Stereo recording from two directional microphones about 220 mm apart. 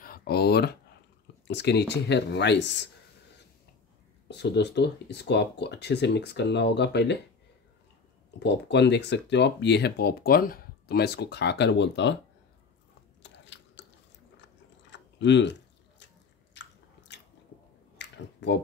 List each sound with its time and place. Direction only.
0.0 s speech: 45° left (ahead or behind)
4.3 s speech: 50° left (ahead or behind)
8.4 s speech: 50° left (ahead or behind)
13.2 s chewing: 55° left (ahead or behind)
14.9 s a sound: 55° left (ahead or behind)
16.6 s biting: 55° left (ahead or behind)
17.9 s a sound: 50° left (ahead or behind)